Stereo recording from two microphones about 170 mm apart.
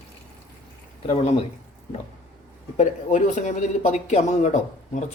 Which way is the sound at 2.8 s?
45° left (ahead or behind).